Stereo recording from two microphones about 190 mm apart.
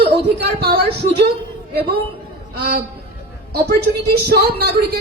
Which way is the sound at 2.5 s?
60° right (ahead or behind).